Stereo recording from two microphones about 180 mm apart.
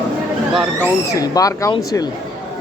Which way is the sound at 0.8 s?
20° left (ahead or behind).